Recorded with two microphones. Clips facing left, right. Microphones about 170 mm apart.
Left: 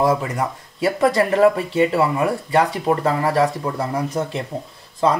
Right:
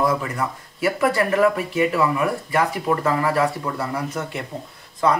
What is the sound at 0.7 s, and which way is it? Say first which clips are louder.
Speech: left 3 dB; 35° left (ahead or behind).